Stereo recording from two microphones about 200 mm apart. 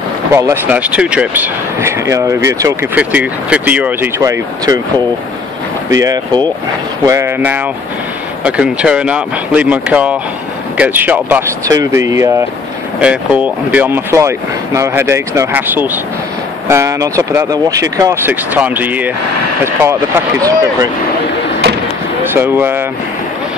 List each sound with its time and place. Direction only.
0.3 s speech: 15° right (ahead or behind)
22.3 s speech: 10° right (ahead or behind)